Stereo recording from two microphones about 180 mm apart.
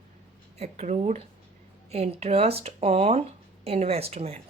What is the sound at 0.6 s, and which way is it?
Speech, 40° right (ahead or behind).